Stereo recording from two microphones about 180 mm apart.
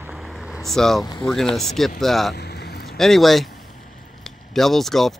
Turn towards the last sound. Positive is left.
turn(degrees=0)  # may be behind; listen again after turning